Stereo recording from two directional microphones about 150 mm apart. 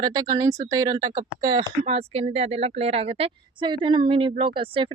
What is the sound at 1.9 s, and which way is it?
A woman's voice, 40° right (ahead or behind).